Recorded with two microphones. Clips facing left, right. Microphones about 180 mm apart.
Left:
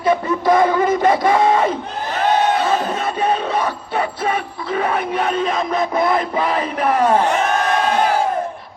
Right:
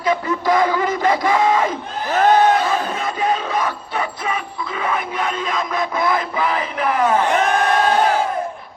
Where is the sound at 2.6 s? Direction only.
30° left (ahead or behind).